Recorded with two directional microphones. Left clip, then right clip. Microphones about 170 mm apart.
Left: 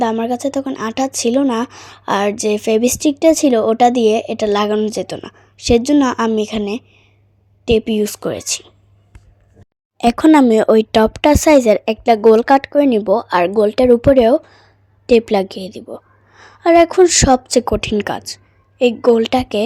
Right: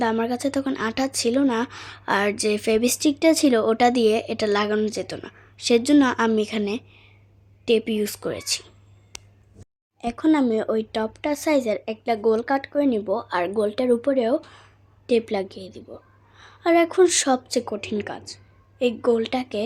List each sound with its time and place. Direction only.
0.0 s a woman's voice: 15° left (ahead or behind)
6.7 s a sound: 20° left (ahead or behind)
7.6 s a woman's voice: 20° left (ahead or behind)
10.0 s a woman's voice: 50° left (ahead or behind)
18.8 s speech: 35° left (ahead or behind)